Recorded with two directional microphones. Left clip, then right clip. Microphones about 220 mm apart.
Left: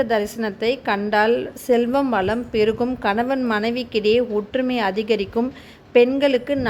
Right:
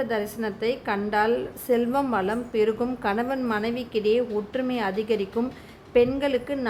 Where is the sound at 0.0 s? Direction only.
15° left (ahead or behind).